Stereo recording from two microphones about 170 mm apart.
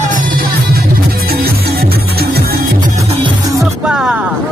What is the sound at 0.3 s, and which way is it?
Music, 60° right (ahead or behind).